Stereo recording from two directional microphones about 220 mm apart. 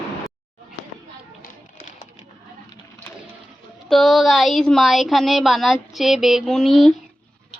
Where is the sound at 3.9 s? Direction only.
Centre (ahead or behind).